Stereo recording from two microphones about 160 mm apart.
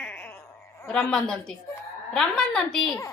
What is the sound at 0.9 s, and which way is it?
A woman's voice, 5° left (ahead or behind).